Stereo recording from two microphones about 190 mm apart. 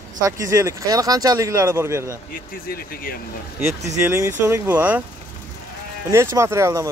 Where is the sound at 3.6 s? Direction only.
15° right (ahead or behind).